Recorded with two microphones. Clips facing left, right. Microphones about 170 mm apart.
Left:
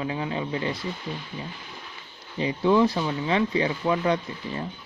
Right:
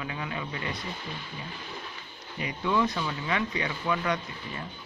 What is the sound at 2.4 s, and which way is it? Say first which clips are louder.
Speech: left 7 dB; 30° left (ahead or behind).